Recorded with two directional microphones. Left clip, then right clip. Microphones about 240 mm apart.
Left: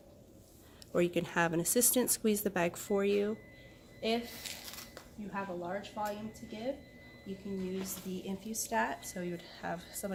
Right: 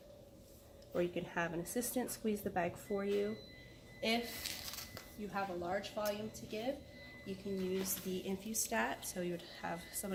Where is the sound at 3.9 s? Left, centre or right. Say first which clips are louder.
Left 2 dB; left.